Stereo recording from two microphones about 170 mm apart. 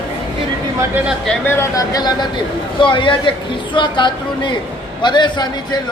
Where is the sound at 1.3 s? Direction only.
15° left (ahead or behind).